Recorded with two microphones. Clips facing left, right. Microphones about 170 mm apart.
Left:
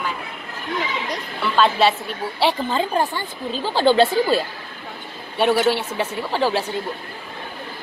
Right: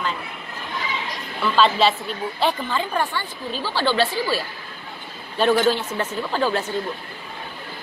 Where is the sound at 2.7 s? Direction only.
35° left (ahead or behind).